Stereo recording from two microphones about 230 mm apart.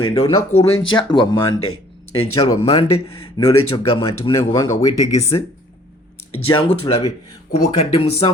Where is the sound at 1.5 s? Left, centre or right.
Left.